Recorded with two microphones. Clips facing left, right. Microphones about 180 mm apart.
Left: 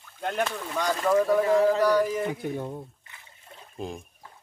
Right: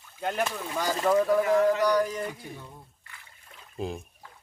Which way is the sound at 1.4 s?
30° left (ahead or behind).